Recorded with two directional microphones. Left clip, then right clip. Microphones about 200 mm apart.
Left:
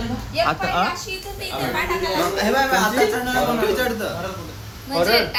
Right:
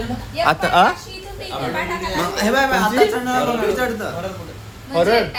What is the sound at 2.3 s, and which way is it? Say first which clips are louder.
Speech: right 4 dB; 60° right (ahead or behind).